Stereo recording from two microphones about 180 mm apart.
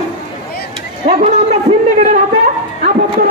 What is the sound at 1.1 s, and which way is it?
A man's voice, 40° right (ahead or behind).